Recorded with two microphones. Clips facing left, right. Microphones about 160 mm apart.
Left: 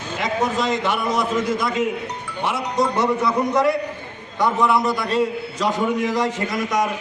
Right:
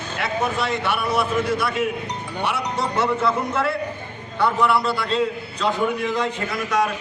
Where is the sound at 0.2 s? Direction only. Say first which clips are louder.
Left 2 dB; 20° left (ahead or behind).